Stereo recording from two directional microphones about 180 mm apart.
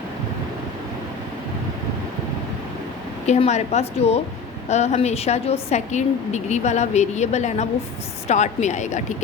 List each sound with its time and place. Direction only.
3.2 s a woman's voice: 35° left (ahead or behind)